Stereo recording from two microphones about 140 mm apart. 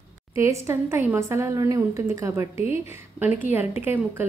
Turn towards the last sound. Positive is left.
turn(degrees=-15)  # may be behind; listen again after turning